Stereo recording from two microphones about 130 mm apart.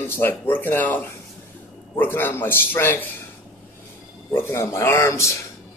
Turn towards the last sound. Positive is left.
turn(degrees=20)  # may be behind; listen again after turning